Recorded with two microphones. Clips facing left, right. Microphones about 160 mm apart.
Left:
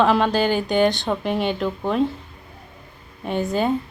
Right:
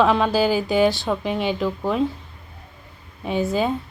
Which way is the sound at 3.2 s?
Centre (ahead or behind).